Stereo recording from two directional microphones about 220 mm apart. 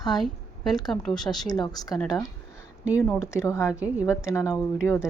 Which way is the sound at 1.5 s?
20° left (ahead or behind).